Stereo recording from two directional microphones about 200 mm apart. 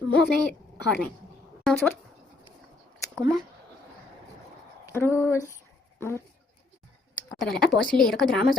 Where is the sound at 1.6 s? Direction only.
5° left (ahead or behind).